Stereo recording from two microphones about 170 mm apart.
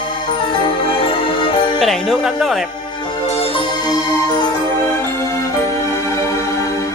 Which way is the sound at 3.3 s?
35° left (ahead or behind).